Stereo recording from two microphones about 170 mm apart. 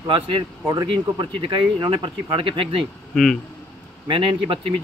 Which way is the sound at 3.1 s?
Centre (ahead or behind).